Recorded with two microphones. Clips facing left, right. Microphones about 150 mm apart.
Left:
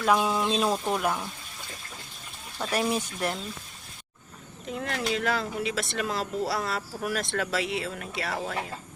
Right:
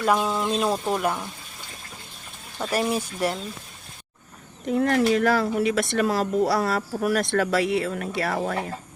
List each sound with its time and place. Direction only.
0.0 s speech: centre (ahead or behind)
2.6 s speech: 5° right (ahead or behind)
4.8 s speech: 50° right (ahead or behind)